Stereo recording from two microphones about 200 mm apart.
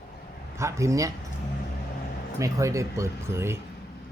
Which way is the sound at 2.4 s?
15° right (ahead or behind).